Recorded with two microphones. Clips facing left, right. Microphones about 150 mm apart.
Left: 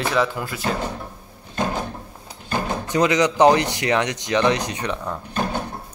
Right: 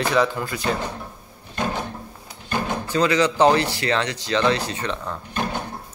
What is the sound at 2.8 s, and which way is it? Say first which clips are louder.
Speech: left 1 dB; 20° left (ahead or behind).